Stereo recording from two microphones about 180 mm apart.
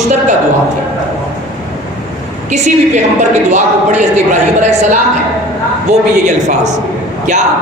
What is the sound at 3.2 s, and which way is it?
A man's voice, 40° right (ahead or behind).